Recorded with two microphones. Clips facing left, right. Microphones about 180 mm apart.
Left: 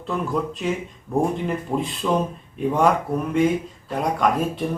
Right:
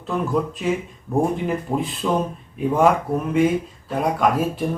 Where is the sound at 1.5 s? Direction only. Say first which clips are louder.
Right 1 dB; 5° right (ahead or behind).